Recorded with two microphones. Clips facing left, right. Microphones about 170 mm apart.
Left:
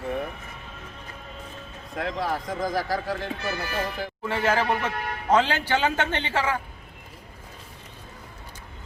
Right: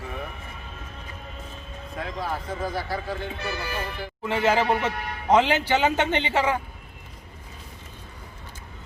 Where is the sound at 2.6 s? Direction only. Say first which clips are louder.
Left 4 dB; 90° left.